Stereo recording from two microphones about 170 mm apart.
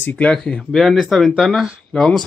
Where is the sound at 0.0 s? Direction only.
5° left (ahead or behind).